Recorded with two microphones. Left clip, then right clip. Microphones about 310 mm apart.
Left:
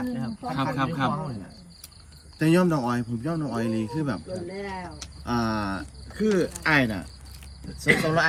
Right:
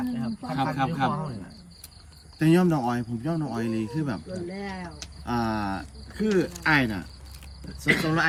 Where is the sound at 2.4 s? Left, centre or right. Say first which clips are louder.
Even; centre.